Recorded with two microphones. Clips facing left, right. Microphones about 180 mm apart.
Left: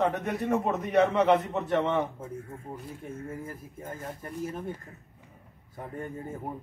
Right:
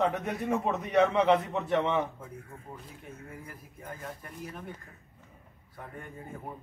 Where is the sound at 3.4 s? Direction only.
45° left (ahead or behind).